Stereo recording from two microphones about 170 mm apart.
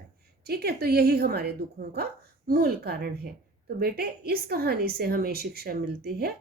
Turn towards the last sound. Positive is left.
turn(degrees=-65)  # may be behind; listen again after turning